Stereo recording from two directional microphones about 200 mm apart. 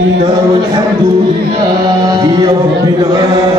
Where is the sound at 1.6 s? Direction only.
20° right (ahead or behind).